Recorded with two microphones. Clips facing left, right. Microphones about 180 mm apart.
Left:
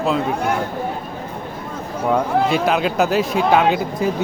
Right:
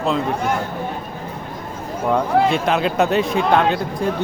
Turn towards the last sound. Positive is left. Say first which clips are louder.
# left 1 dB
turn(degrees=5)  # may be behind; listen again after turning